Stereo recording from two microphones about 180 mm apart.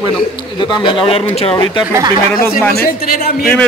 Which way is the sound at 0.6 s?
25° left (ahead or behind).